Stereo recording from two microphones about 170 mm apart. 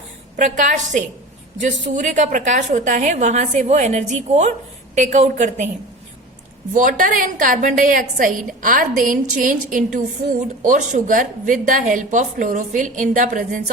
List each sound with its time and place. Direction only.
0.3 s a woman's voice: 50° right (ahead or behind)
6.7 s a woman's voice: 50° right (ahead or behind)